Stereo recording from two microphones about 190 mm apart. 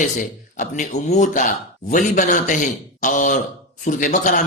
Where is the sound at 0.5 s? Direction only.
40° left (ahead or behind).